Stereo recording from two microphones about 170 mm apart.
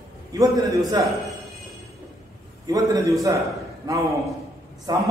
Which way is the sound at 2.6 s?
20° right (ahead or behind).